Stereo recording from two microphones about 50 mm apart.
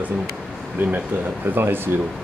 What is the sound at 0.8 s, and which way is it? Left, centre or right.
Speech, right.